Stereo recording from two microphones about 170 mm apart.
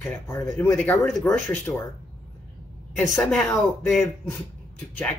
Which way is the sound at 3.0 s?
10° left (ahead or behind).